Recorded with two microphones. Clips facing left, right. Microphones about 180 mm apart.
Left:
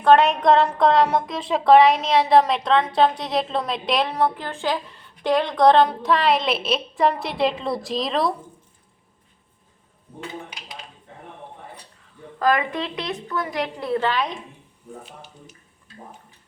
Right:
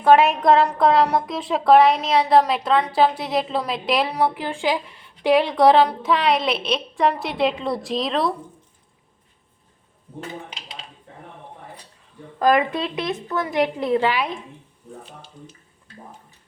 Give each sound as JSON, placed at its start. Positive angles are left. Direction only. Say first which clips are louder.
{"t": 0.0, "sound": "a woman's voice", "louder": "even", "side_deg": -5}
{"t": 10.5, "sound": "a sound", "louder": "even", "side_deg": -25}
{"t": 12.4, "sound": "a woman's voice", "louder": "right 3 dB", "side_deg": -20}